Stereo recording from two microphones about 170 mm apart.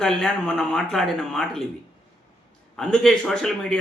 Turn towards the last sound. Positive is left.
turn(degrees=5)  # may be behind; listen again after turning